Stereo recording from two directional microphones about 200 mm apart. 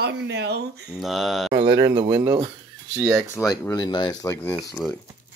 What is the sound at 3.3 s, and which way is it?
Speech, 15° left (ahead or behind).